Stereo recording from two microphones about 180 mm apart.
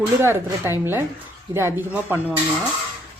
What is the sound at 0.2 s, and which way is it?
Speech, 15° right (ahead or behind).